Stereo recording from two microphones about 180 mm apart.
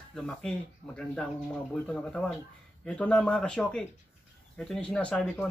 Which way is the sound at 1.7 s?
5° left (ahead or behind).